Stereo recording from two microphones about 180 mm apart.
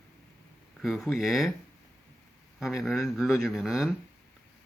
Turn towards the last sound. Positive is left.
turn(degrees=0)  # may be behind; listen again after turning